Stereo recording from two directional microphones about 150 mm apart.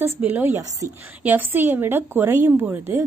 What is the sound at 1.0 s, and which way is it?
A woman's voice, 10° right (ahead or behind).